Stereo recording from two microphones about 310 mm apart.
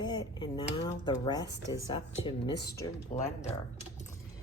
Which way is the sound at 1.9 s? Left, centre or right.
Centre.